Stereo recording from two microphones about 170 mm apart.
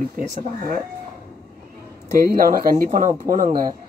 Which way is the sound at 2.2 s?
55° right (ahead or behind).